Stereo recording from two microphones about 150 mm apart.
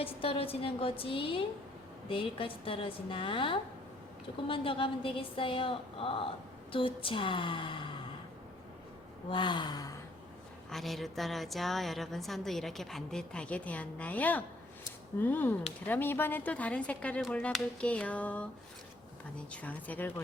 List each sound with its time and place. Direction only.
0.0 s a woman's voice: 40° left (ahead or behind)
9.3 s a woman's voice: 30° left (ahead or behind)
10.7 s a woman's voice: centre (ahead or behind)
19.5 s speech: 10° left (ahead or behind)